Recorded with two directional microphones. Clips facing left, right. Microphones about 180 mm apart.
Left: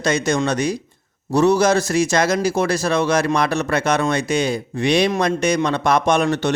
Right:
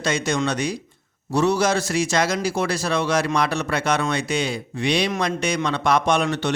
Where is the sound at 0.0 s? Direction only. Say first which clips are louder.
Left 4 dB; 45° left (ahead or behind).